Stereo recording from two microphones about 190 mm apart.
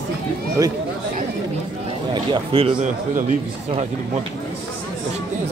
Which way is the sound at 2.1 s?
30° right (ahead or behind).